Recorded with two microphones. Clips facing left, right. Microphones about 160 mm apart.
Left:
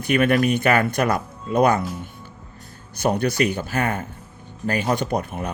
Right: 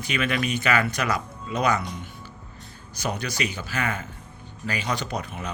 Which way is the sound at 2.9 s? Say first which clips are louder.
Left 9 dB; 55° left (ahead or behind).